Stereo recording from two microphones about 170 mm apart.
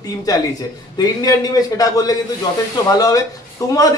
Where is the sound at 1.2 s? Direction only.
20° left (ahead or behind).